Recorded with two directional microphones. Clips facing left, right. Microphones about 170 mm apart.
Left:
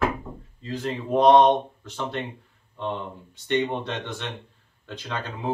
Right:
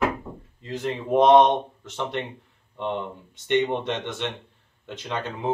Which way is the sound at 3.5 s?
20° right (ahead or behind).